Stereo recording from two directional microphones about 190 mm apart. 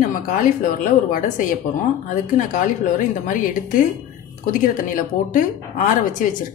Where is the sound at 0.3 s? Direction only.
45° left (ahead or behind).